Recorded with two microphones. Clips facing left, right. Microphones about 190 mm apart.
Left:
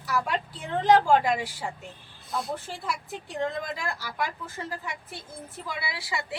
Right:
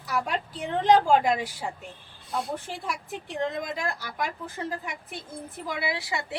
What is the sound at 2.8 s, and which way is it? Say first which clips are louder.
Speech: even; 15° right (ahead or behind).